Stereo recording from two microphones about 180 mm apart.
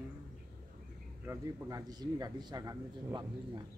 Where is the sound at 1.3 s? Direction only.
20° right (ahead or behind).